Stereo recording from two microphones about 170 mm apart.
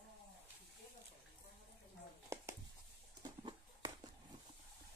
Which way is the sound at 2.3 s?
15° right (ahead or behind).